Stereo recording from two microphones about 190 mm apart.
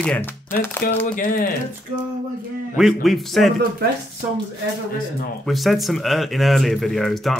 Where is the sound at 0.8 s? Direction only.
50° left (ahead or behind).